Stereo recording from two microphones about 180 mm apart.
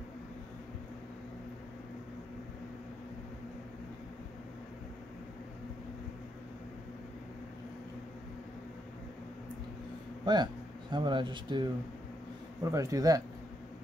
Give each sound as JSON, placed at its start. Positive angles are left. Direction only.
{"t": 10.2, "sound": "speech", "side_deg": -25}